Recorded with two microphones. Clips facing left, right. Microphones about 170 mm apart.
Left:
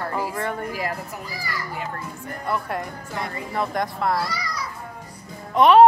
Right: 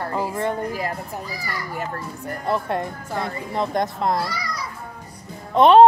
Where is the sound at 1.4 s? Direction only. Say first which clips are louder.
Even; 45° right (ahead or behind).